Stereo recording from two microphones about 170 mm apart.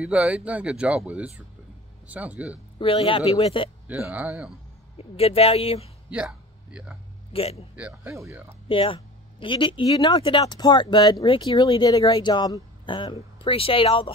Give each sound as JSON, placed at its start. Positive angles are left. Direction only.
{"t": 0.0, "sound": "speech", "side_deg": -5}
{"t": 2.8, "sound": "speech", "side_deg": 35}
{"t": 3.8, "sound": "speech", "side_deg": -10}
{"t": 4.9, "sound": "speech", "side_deg": 35}
{"t": 6.0, "sound": "a sound", "side_deg": -5}
{"t": 7.3, "sound": "speech", "side_deg": 35}
{"t": 7.7, "sound": "speech", "side_deg": -10}
{"t": 8.6, "sound": "speech", "side_deg": 30}